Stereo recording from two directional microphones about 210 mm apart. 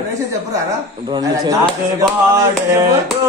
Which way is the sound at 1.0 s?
20° right (ahead or behind).